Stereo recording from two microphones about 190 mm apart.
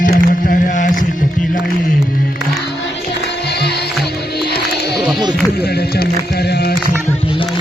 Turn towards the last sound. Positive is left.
turn(degrees=60)  # may be behind; listen again after turning